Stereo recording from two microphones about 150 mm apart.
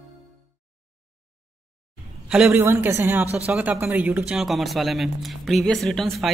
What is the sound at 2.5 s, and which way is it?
A woman's voice, 15° right (ahead or behind).